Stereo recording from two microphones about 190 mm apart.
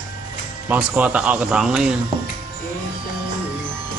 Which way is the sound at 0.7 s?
10° right (ahead or behind).